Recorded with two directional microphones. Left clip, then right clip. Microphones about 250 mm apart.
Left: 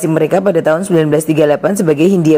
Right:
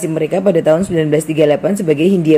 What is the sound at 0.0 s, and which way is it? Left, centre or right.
A woman's voice, centre.